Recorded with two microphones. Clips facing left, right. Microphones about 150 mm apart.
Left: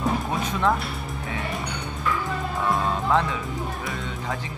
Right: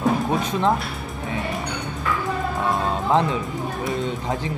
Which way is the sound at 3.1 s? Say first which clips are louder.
Right 4 dB; 20° right (ahead or behind).